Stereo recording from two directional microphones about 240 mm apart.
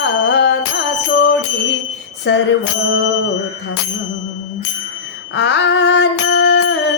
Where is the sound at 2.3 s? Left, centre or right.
Left.